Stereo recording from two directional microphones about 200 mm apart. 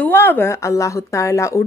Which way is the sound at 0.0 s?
10° left (ahead or behind).